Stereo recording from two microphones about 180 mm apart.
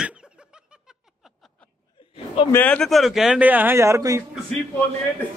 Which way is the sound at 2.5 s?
5° left (ahead or behind).